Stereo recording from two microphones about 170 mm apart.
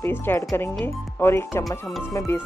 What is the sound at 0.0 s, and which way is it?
Speech, 15° left (ahead or behind).